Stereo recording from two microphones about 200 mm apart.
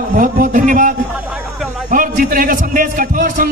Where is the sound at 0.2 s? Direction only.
40° right (ahead or behind).